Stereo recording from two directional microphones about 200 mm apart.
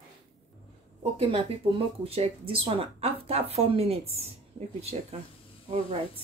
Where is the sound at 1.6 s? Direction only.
25° right (ahead or behind).